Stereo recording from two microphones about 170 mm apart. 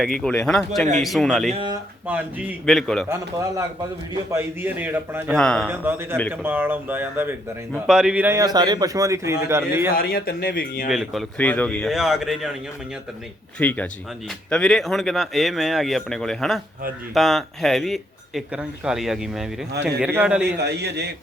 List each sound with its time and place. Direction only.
0.0 s a man's voice: centre (ahead or behind)
1.5 s a man's voice: 25° right (ahead or behind)
2.1 s speech: 10° right (ahead or behind)
2.6 s a man's voice: centre (ahead or behind)
4.1 s speech: 15° right (ahead or behind)
5.3 s a man's voice: 5° left (ahead or behind)
5.7 s speech: 15° right (ahead or behind)
8.4 s a man's voice: 25° right (ahead or behind)
9.9 s speech: 60° left (ahead or behind)
10.8 s a man's voice: centre (ahead or behind)
13.6 s a man's voice: 10° left (ahead or behind); by 20.6 s 5° right (ahead or behind)
20.6 s a man's voice: 80° right